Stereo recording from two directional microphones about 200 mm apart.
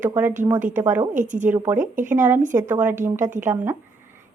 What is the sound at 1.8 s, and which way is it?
Speech, 40° right (ahead or behind).